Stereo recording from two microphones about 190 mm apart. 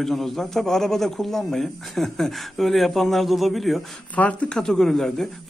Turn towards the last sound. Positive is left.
turn(degrees=0)  # may be behind; listen again after turning